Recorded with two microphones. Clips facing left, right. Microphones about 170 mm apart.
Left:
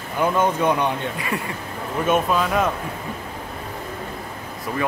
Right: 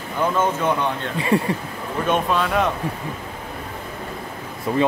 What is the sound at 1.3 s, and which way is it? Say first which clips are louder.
Speech: right 11 dB; 30° right (ahead or behind).